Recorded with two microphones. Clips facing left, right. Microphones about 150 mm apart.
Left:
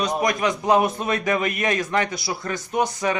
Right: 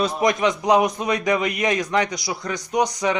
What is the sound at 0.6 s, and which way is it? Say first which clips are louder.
A man's voice: left 1 dB; 15° right (ahead or behind).